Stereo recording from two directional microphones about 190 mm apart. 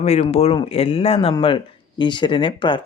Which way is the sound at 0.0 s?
35° left (ahead or behind).